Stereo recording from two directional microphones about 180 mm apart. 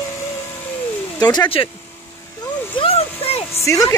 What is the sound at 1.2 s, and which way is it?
Speech, 20° left (ahead or behind).